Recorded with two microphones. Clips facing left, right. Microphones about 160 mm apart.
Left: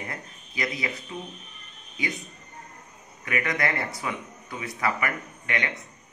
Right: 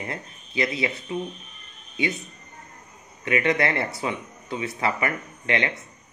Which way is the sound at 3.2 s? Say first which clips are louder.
Right 5 dB; 25° right (ahead or behind).